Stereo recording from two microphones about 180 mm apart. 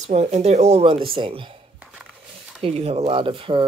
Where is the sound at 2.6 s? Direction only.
35° right (ahead or behind).